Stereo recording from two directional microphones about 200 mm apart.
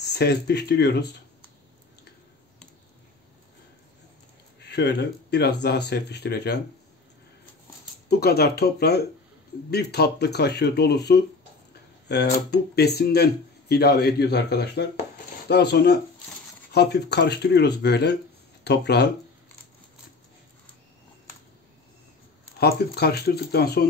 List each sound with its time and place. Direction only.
0.0 s speech: 55° left (ahead or behind)
4.6 s speech: 60° left (ahead or behind)
8.1 s speech: 55° left (ahead or behind)
22.6 s speech: 50° left (ahead or behind)